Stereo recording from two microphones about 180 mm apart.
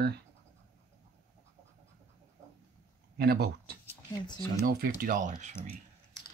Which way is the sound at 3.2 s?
65° right (ahead or behind).